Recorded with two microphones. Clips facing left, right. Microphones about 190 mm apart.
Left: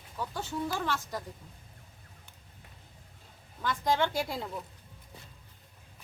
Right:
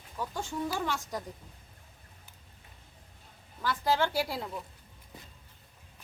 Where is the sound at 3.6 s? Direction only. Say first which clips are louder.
Even; 5° right (ahead or behind).